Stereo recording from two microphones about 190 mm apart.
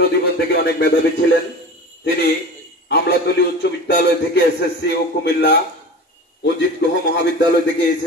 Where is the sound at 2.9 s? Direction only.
60° left (ahead or behind).